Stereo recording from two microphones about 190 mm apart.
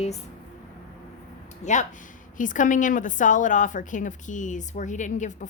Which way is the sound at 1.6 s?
40° left (ahead or behind).